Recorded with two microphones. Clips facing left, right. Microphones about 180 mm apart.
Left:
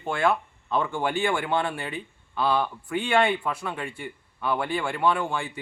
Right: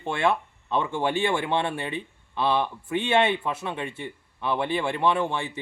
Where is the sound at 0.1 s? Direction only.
25° right (ahead or behind).